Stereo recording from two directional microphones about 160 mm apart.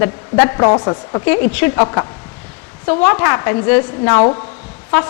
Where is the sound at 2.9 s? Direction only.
15° left (ahead or behind).